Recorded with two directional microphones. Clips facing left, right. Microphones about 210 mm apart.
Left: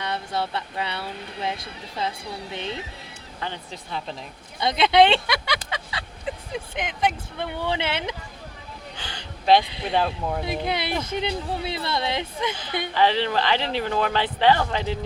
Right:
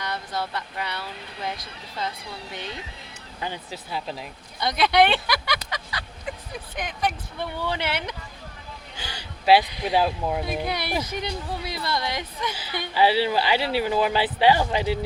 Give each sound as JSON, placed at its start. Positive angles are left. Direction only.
{"t": 0.0, "sound": "speech", "side_deg": 25}
{"t": 3.4, "sound": "speech", "side_deg": -10}
{"t": 4.6, "sound": "speech", "side_deg": 25}
{"t": 5.7, "sound": "vehicle", "side_deg": 25}
{"t": 6.7, "sound": "speech", "side_deg": 20}
{"t": 9.0, "sound": "a sound", "side_deg": -10}
{"t": 9.9, "sound": "speech", "side_deg": -5}
{"t": 10.7, "sound": "speech", "side_deg": 25}
{"t": 12.9, "sound": "speech", "side_deg": -10}